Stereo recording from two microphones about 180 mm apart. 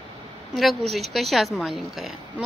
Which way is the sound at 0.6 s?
Centre (ahead or behind).